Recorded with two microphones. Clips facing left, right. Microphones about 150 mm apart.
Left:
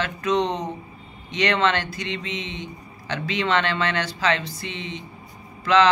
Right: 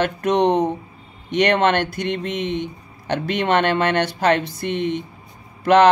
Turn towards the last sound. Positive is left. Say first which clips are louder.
# right 5 dB
turn(degrees=-60)  # may be behind; listen again after turning